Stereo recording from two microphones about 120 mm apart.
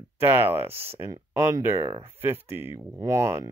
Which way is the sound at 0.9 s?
20° right (ahead or behind).